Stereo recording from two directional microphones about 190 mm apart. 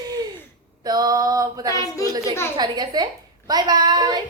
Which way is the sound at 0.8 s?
20° right (ahead or behind).